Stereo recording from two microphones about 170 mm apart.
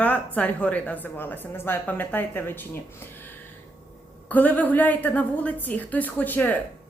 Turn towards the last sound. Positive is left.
turn(degrees=10)  # may be behind; listen again after turning